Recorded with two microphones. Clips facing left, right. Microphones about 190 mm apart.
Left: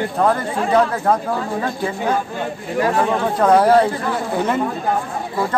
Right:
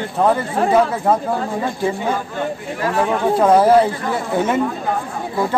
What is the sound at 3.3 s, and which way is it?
Speech, 5° right (ahead or behind).